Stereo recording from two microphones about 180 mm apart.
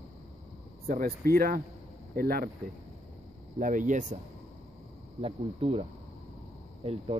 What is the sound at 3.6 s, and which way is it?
Speech, 45° right (ahead or behind).